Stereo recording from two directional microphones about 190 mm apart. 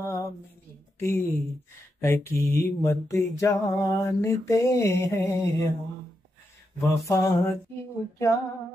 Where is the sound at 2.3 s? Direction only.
10° left (ahead or behind).